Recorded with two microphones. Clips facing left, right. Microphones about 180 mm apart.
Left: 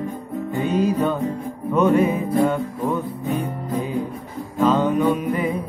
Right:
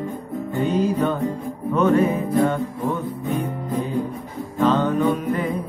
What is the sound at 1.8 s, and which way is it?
Music, 15° left (ahead or behind).